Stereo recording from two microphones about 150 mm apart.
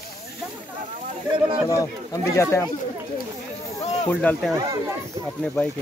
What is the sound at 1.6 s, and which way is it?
Speech, 20° left (ahead or behind).